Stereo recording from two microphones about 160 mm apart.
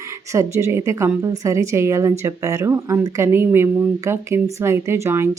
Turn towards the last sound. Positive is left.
turn(degrees=-15)  # may be behind; listen again after turning